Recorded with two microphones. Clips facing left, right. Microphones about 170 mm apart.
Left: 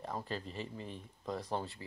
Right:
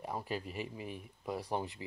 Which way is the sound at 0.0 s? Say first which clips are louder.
Right 1 dB; 10° right (ahead or behind).